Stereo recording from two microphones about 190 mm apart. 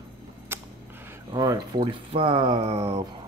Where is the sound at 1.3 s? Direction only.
20° right (ahead or behind).